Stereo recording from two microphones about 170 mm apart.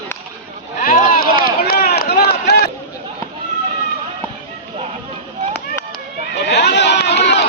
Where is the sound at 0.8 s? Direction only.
55° left (ahead or behind); by 2.7 s 70° left (ahead or behind).